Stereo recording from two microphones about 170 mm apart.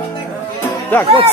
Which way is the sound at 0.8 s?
10° left (ahead or behind).